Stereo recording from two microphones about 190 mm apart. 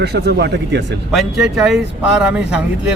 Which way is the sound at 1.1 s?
Centre (ahead or behind).